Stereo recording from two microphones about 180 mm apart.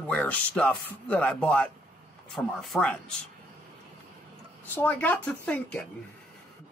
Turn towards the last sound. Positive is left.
turn(degrees=10)  # may be behind; listen again after turning